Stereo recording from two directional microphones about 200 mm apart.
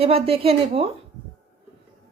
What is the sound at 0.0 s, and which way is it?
Speech, 30° right (ahead or behind).